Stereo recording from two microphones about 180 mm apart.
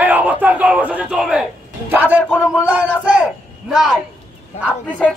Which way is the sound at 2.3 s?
10° left (ahead or behind).